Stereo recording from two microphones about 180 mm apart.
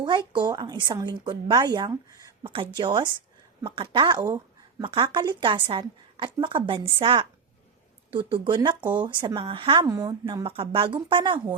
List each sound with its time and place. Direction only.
0.0 s a woman's voice: 25° right (ahead or behind)
2.4 s a woman's voice: 30° right (ahead or behind)
9.8 s speech: 20° right (ahead or behind)
10.4 s a woman's voice: 30° right (ahead or behind)